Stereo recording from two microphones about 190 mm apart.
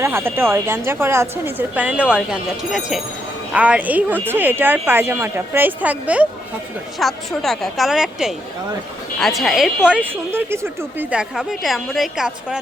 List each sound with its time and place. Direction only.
0.0 s a woman's voice: 15° right (ahead or behind)